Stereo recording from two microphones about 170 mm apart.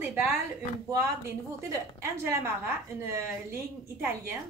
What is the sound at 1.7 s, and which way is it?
A woman's voice, 15° right (ahead or behind).